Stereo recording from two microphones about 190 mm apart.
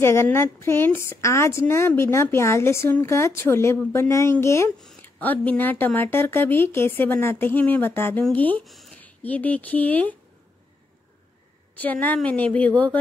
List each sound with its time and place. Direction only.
0.0 s speech: 15° left (ahead or behind)
11.8 s speech: 10° left (ahead or behind)